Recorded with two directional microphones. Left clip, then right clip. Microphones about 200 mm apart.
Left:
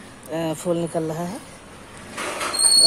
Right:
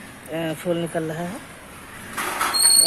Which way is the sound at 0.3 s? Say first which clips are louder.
Left 1 dB; 10° left (ahead or behind).